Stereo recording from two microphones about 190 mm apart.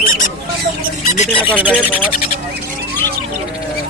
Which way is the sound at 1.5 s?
5° left (ahead or behind).